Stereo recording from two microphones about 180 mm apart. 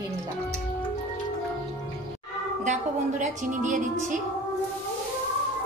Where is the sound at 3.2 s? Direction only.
40° right (ahead or behind).